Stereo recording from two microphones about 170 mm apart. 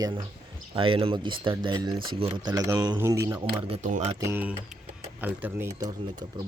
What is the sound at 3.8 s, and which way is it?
Speech, 45° right (ahead or behind).